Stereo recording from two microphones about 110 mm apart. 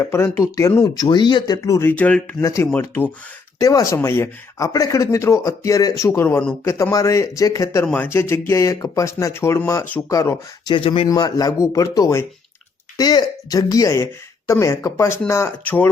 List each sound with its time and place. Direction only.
0.0 s speech: 20° left (ahead or behind)
1.0 s speech: 40° left (ahead or behind)
1.6 s speech: 30° left (ahead or behind)
1.9 s speech: 15° left (ahead or behind)
2.4 s speech: 30° left (ahead or behind)
2.7 s speech: 15° left (ahead or behind)
3.6 s speech: 30° left (ahead or behind)
7.9 s speech: 15° left (ahead or behind)
10.8 s speech: 55° left (ahead or behind)
11.1 s speech: 35° left (ahead or behind); by 15.9 s 20° left (ahead or behind)